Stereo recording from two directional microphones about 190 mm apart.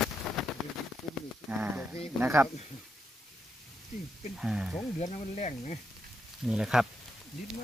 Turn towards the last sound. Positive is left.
turn(degrees=0)  # may be behind; listen again after turning